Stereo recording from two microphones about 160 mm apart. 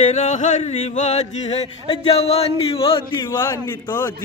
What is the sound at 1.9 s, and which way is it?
Speech, 40° left (ahead or behind).